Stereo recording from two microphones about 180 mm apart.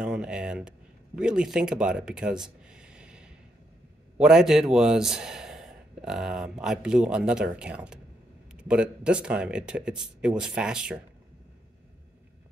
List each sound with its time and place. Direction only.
0.0 s speech: 5° right (ahead or behind)